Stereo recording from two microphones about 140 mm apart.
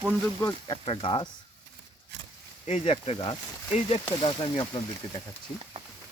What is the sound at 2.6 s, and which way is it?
Speech, 50° left (ahead or behind).